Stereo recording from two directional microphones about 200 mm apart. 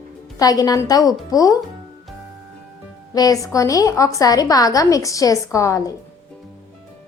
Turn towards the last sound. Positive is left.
turn(degrees=15)  # may be behind; listen again after turning